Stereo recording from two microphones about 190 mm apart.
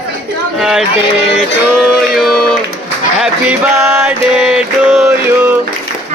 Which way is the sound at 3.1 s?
5° right (ahead or behind).